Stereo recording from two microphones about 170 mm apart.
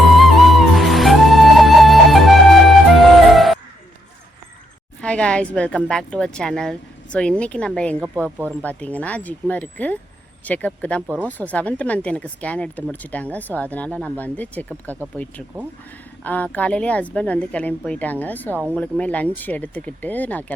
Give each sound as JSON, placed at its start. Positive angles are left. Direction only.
{"t": 0.2, "sound": "music", "side_deg": 0}
{"t": 4.9, "sound": "a woman's voice", "side_deg": 5}
{"t": 7.9, "sound": "speech", "side_deg": -10}
{"t": 8.6, "sound": "speech", "side_deg": 10}
{"t": 15.5, "sound": "speech", "side_deg": -20}
{"t": 16.2, "sound": "speech", "side_deg": 10}
{"t": 18.5, "sound": "speech", "side_deg": -10}
{"t": 18.8, "sound": "speech", "side_deg": 10}